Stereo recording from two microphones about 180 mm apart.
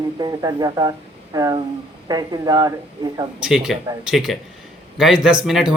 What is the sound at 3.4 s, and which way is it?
Speech, 5° right (ahead or behind).